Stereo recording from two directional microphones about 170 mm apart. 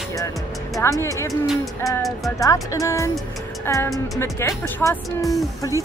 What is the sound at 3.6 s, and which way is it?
Speech, 15° left (ahead or behind).